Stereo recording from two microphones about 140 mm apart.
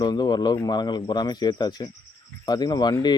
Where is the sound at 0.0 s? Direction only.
30° left (ahead or behind).